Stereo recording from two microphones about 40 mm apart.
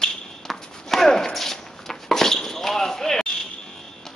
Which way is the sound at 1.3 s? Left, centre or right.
Centre.